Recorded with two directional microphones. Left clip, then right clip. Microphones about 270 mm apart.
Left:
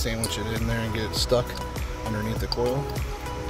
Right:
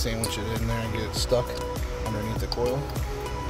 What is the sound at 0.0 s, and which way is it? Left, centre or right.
Speech, centre.